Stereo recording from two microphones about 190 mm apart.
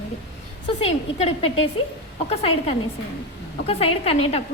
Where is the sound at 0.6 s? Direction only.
30° left (ahead or behind).